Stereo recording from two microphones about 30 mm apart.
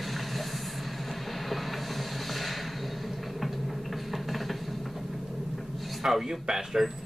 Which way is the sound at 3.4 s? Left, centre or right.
Centre.